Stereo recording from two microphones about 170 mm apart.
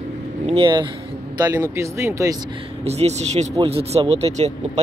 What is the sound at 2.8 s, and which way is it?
Speech, 40° right (ahead or behind).